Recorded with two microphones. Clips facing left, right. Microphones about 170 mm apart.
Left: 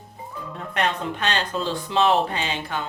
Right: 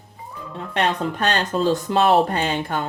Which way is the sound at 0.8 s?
45° right (ahead or behind).